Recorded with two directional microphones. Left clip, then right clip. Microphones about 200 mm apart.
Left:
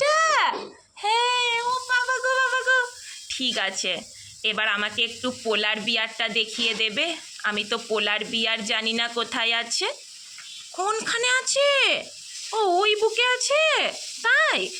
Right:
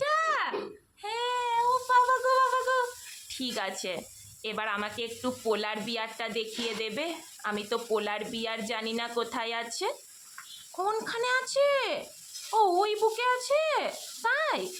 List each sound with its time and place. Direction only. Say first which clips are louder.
0.0 s a sound: left 8 dB; centre (ahead or behind)
1.0 s child singing: left 9 dB; centre (ahead or behind)
3.2 s speech: left 8 dB; 5° left (ahead or behind)